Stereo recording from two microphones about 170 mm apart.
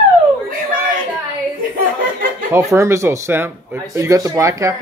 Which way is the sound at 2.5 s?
15° right (ahead or behind).